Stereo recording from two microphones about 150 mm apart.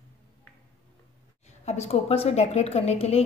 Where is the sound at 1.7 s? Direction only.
45° left (ahead or behind).